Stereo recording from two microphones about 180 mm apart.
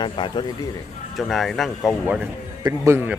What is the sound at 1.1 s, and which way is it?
A man's voice, centre (ahead or behind).